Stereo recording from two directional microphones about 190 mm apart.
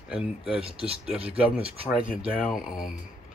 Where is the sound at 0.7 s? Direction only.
30° right (ahead or behind).